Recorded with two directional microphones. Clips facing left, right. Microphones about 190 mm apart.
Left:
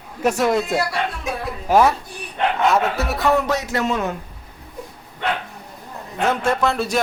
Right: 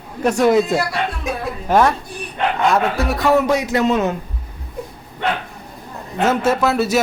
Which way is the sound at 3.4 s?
15° right (ahead or behind).